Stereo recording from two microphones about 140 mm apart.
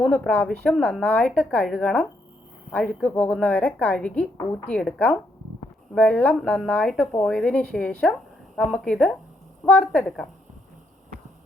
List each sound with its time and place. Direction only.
0.0 s a woman's voice: 10° left (ahead or behind)